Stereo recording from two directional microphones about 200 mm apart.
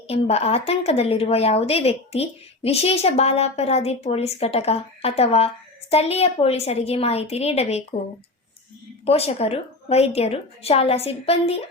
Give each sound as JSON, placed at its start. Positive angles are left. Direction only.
{"t": 0.1, "sound": "a woman's voice", "side_deg": 30}
{"t": 9.0, "sound": "a woman's voice", "side_deg": 30}